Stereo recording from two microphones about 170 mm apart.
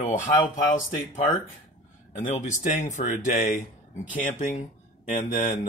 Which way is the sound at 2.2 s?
45° left (ahead or behind).